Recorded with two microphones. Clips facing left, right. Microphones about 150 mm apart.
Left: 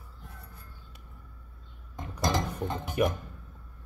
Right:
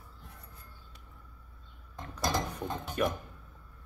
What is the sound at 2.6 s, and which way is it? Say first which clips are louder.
Music: left 5 dB; 10° left (ahead or behind).